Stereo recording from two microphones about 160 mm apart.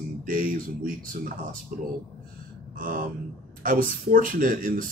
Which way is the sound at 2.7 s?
60° right (ahead or behind).